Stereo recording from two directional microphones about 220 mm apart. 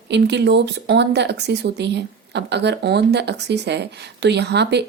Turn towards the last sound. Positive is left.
turn(degrees=-50)  # may be behind; listen again after turning